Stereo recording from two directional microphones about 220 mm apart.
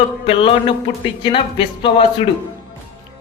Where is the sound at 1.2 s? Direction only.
25° left (ahead or behind).